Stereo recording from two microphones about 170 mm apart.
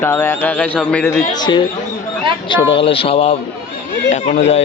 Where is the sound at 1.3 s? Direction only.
25° left (ahead or behind).